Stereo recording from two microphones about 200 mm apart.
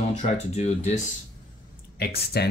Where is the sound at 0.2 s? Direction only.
35° left (ahead or behind).